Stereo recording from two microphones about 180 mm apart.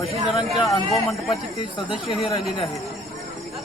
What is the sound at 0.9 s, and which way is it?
Speech, centre (ahead or behind).